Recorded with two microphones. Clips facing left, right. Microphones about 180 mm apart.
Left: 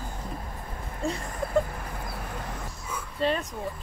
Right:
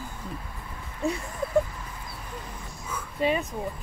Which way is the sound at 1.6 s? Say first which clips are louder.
Left 4 dB; 55° left (ahead or behind).